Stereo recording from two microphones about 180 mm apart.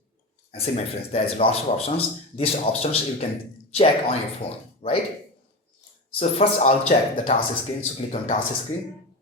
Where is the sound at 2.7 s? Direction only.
60° left (ahead or behind).